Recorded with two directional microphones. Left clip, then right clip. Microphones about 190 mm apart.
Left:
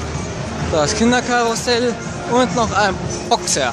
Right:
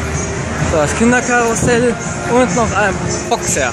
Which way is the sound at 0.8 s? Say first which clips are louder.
Right 2 dB; 10° left (ahead or behind).